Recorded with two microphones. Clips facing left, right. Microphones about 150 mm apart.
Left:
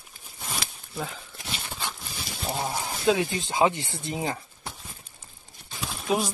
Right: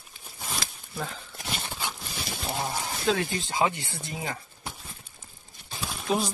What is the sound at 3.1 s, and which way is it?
Speech, 15° left (ahead or behind).